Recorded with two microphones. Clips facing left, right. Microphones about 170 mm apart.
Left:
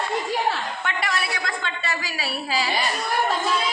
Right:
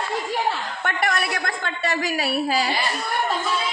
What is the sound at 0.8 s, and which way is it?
A woman's voice, 50° right (ahead or behind).